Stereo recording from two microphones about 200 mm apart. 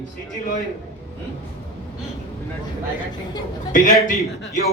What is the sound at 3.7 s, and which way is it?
Speech, 40° left (ahead or behind).